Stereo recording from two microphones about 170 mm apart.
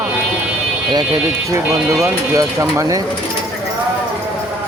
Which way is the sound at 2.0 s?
15° right (ahead or behind).